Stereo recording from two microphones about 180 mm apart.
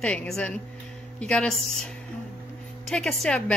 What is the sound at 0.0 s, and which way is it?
Speech, 5° left (ahead or behind).